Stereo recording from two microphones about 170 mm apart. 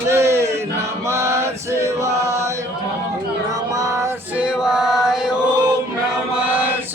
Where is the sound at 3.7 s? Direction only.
20° right (ahead or behind).